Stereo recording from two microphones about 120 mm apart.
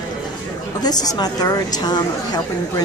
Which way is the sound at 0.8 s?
35° left (ahead or behind).